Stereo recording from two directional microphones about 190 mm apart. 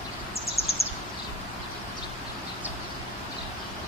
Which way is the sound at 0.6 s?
30° left (ahead or behind).